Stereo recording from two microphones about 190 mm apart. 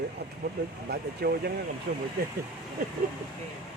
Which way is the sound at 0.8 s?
55° right (ahead or behind).